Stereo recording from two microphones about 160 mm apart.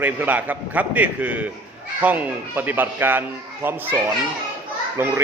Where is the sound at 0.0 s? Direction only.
10° right (ahead or behind).